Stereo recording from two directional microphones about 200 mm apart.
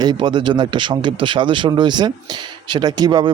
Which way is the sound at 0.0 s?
20° right (ahead or behind).